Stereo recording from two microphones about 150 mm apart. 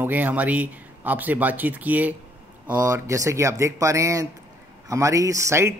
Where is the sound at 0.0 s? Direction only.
10° right (ahead or behind).